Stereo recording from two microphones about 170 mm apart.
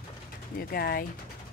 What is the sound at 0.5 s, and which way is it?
Speech, 60° left (ahead or behind).